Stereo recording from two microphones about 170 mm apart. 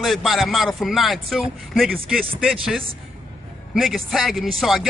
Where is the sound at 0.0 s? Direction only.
Centre (ahead or behind).